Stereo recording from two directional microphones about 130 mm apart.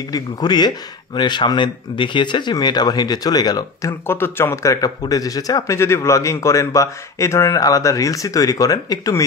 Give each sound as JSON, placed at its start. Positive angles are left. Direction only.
{"t": 0.1, "sound": "speech", "side_deg": 35}
{"t": 4.1, "sound": "speech", "side_deg": 15}